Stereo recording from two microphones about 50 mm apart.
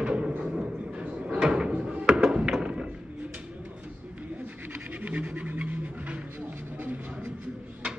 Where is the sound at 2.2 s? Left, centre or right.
Centre.